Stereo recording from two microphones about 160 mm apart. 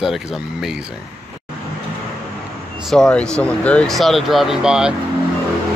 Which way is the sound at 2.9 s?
5° left (ahead or behind).